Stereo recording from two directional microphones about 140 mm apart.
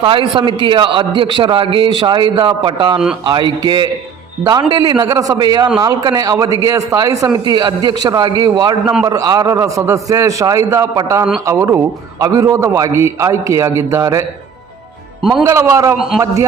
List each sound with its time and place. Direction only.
0.0 s a man's voice: 40° right (ahead or behind); by 14.3 s 20° right (ahead or behind)
15.2 s a man's voice: centre (ahead or behind)
15.4 s a man's voice: 20° right (ahead or behind)